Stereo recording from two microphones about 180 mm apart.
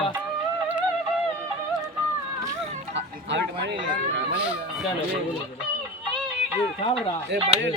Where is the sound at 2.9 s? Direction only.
85° right.